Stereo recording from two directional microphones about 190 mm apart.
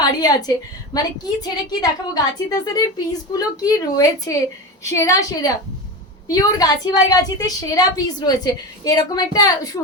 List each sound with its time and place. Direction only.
0.0 s a woman's voice: 20° left (ahead or behind)